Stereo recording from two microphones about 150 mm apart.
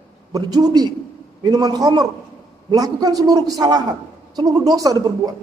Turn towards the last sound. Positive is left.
turn(degrees=-25)  # may be behind; listen again after turning